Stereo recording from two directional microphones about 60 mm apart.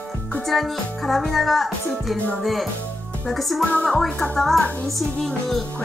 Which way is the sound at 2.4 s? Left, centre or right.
Centre.